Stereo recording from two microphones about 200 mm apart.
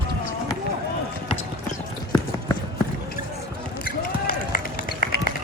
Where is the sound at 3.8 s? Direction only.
45° left (ahead or behind).